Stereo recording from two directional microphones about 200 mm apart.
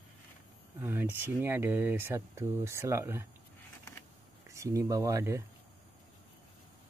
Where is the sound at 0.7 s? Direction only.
10° right (ahead or behind).